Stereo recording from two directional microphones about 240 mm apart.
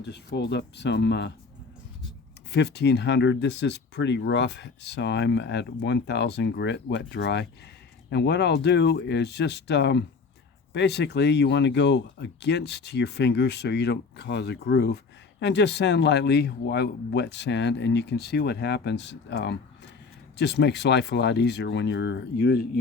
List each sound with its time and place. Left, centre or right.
0.0 s speech: left
2.5 s speech: left